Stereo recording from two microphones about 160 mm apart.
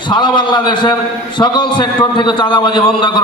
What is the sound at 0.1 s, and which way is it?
A man's voice, 30° left (ahead or behind).